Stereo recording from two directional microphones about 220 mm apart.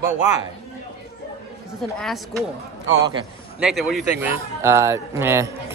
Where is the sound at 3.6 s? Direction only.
Centre (ahead or behind).